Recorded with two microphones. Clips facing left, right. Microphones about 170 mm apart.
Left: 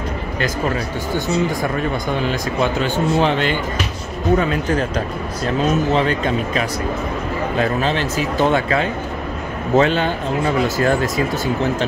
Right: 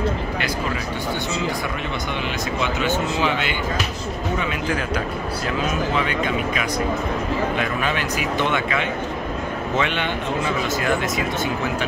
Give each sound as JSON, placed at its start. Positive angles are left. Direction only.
{"t": 0.4, "sound": "speech", "side_deg": 45}
{"t": 5.9, "sound": "speech", "side_deg": 35}